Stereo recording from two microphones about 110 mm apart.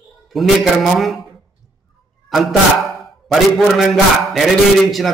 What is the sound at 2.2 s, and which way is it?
A man's voice, centre (ahead or behind).